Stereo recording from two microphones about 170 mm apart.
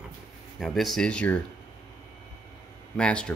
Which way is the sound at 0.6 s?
Centre (ahead or behind).